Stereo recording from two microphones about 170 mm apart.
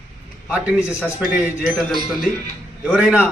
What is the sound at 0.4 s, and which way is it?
A man's voice, 5° right (ahead or behind).